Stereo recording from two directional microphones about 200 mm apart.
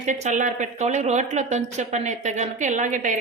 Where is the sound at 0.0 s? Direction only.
35° right (ahead or behind).